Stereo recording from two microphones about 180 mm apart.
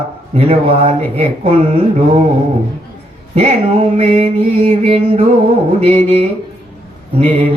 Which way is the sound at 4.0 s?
35° right (ahead or behind).